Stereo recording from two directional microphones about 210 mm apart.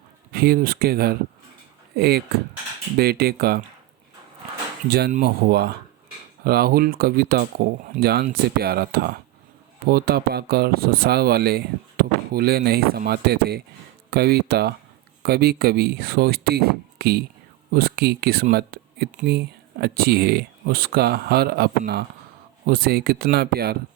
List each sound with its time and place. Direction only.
0.3 s speech: 45° right (ahead or behind)
4.9 s speech: 50° right (ahead or behind)